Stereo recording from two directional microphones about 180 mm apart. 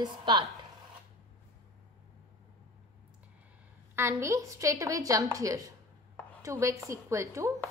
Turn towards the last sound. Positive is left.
turn(degrees=-15)  # may be behind; listen again after turning